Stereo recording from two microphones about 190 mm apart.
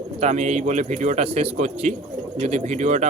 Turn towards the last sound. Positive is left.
turn(degrees=-35)  # may be behind; listen again after turning